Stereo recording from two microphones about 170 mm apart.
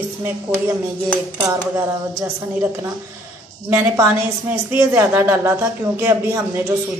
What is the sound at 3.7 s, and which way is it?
A woman's voice, 10° right (ahead or behind).